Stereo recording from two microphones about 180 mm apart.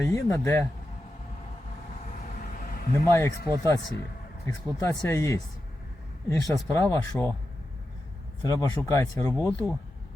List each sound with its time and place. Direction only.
0.0 s speech: 15° left (ahead or behind)
2.4 s a sound: 50° left (ahead or behind)
3.1 s speech: 15° left (ahead or behind)
3.4 s speech: 20° right (ahead or behind)
4.4 s speech: 15° left (ahead or behind)
8.4 s speech: 20° left (ahead or behind)